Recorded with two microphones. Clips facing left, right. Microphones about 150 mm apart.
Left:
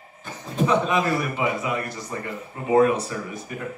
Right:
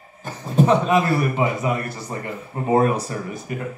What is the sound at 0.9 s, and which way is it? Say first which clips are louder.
Speech: right 4 dB; 40° right (ahead or behind).